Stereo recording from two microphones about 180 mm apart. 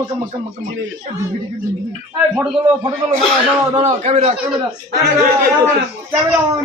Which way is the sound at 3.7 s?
35° right (ahead or behind).